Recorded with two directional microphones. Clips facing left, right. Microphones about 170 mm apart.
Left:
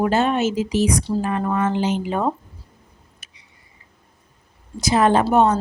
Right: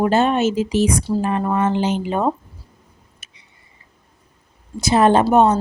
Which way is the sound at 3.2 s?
25° right (ahead or behind).